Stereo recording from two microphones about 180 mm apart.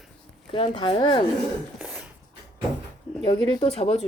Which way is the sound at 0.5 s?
30° left (ahead or behind).